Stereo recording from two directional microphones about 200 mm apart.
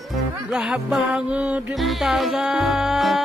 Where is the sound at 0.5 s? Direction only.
5° right (ahead or behind).